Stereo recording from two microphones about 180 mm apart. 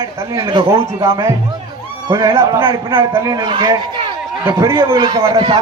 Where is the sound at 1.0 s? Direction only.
15° right (ahead or behind).